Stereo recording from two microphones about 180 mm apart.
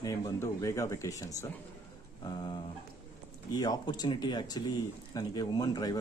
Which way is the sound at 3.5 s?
20° left (ahead or behind).